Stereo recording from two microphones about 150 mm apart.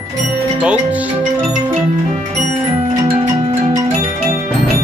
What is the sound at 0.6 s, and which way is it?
Music, 10° right (ahead or behind).